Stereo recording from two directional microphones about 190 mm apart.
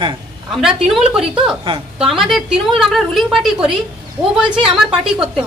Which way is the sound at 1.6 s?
25° right (ahead or behind).